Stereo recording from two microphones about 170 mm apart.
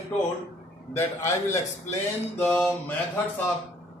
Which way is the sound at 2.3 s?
10° left (ahead or behind).